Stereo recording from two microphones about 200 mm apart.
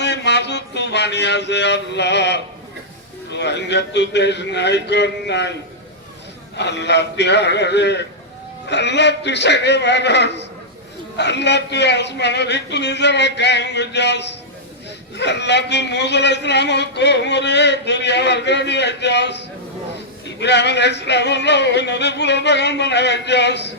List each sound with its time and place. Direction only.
0.0 s a sound: 60° left (ahead or behind)
3.2 s speech: 60° left (ahead or behind)
6.6 s speech: 60° left (ahead or behind)